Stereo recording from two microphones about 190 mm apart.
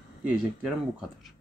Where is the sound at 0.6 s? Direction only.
Centre (ahead or behind).